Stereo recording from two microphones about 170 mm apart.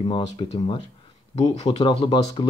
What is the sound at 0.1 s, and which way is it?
Speech, 30° left (ahead or behind).